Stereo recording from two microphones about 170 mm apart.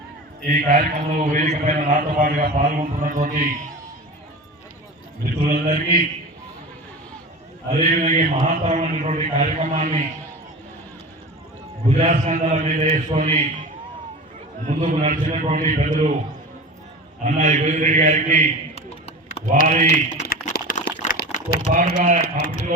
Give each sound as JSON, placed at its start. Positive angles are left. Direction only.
{"t": 0.4, "sound": "a man's voice", "side_deg": -50}
{"t": 5.2, "sound": "a man's voice", "side_deg": -55}
{"t": 7.7, "sound": "a man's voice", "side_deg": -45}
{"t": 11.9, "sound": "a man's voice", "side_deg": -45}
{"t": 14.7, "sound": "a man's voice", "side_deg": -45}
{"t": 17.2, "sound": "a man's voice", "side_deg": -45}
{"t": 18.7, "sound": "a sound", "side_deg": 40}
{"t": 19.6, "sound": "a man's voice", "side_deg": -45}
{"t": 20.1, "sound": "a sound", "side_deg": 55}
{"t": 21.2, "sound": "a sound", "side_deg": 45}
{"t": 21.8, "sound": "a man's voice", "side_deg": -45}